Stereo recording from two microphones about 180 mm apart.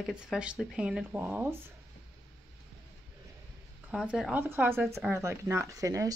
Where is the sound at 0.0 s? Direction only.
Centre (ahead or behind).